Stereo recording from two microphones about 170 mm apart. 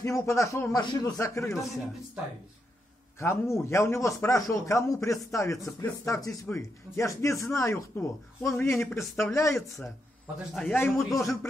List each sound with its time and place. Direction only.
0.0 s speech: 15° left (ahead or behind)
3.2 s speech: 15° left (ahead or behind)
9.6 s speech: centre (ahead or behind)